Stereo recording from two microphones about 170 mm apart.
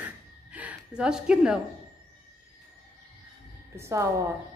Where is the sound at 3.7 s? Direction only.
15° right (ahead or behind).